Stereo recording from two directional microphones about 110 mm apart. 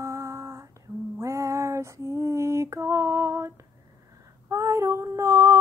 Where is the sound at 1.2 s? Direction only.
25° right (ahead or behind).